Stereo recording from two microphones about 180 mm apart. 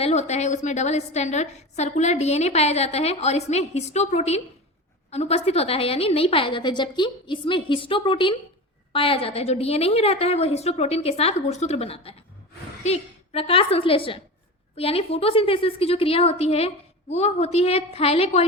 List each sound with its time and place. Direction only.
0.0 s a woman's voice: 40° left (ahead or behind)